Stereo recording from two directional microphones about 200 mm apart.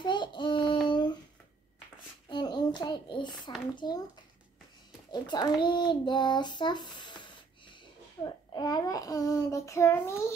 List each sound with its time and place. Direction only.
0.0 s child singing: 25° left (ahead or behind)
0.8 s a sound: 25° left (ahead or behind)
2.2 s a sound: 25° left (ahead or behind)
3.7 s speech: 20° left (ahead or behind)
5.1 s a child's voice: 20° left (ahead or behind)
8.2 s child singing: 20° left (ahead or behind)